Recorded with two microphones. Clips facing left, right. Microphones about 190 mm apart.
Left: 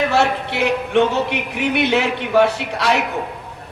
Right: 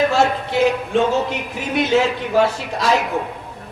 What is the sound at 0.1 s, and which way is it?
Speech, 65° left (ahead or behind).